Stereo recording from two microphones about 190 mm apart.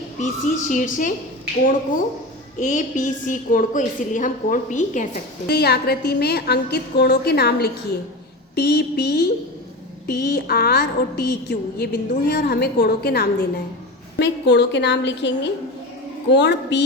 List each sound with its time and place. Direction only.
0.2 s a woman's voice: 40° left (ahead or behind)
5.5 s a woman's voice: 55° left (ahead or behind)